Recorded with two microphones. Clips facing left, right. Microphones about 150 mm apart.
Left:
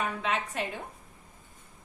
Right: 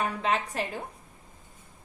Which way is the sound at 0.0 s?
35° right (ahead or behind).